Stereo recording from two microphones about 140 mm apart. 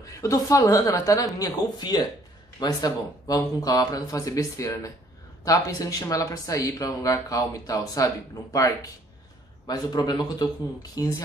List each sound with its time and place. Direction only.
0.2 s speech: 25° left (ahead or behind)